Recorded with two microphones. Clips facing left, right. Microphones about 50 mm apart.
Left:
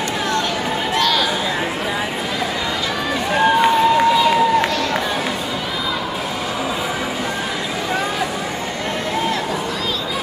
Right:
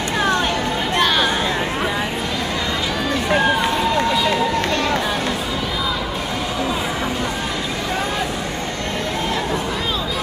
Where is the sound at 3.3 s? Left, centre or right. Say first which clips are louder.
Left 4 dB; centre.